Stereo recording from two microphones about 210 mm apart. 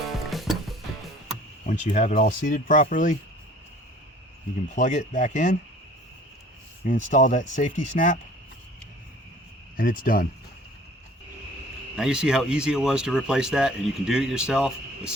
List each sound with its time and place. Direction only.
0.3 s music: centre (ahead or behind)
1.6 s speech: 35° left (ahead or behind)
4.7 s speech: 35° left (ahead or behind)
6.8 s speech: 40° left (ahead or behind)
9.7 s speech: 40° left (ahead or behind)
11.9 s speech: 5° right (ahead or behind)